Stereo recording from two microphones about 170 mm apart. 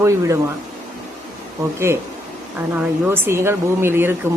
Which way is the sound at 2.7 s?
15° right (ahead or behind).